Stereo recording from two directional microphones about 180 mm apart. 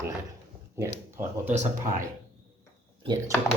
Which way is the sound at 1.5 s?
40° right (ahead or behind).